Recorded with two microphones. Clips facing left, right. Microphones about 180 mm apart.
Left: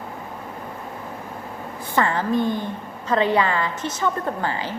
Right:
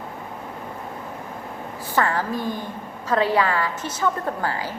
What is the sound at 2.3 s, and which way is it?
Speech, 20° left (ahead or behind).